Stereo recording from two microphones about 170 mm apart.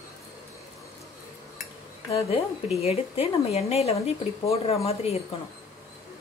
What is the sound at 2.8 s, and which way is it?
Speech, 35° left (ahead or behind).